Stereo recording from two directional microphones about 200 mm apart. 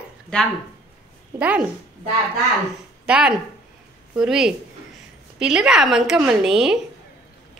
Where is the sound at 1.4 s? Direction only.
5° right (ahead or behind).